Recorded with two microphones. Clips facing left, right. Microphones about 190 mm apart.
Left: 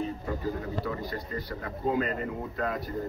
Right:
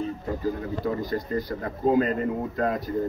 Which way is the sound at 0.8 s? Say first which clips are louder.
Right 7 dB; 45° right (ahead or behind).